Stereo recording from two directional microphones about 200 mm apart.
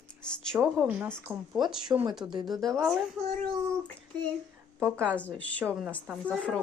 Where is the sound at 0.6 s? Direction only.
10° right (ahead or behind).